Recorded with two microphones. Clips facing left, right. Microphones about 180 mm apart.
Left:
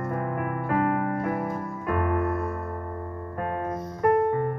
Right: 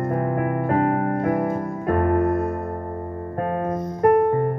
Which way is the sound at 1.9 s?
45° right (ahead or behind).